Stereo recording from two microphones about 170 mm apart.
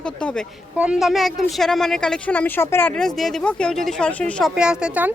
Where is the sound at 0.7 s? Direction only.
5° right (ahead or behind).